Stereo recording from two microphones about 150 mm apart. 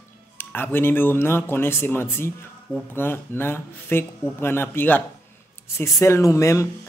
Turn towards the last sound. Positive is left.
turn(degrees=20)  # may be behind; listen again after turning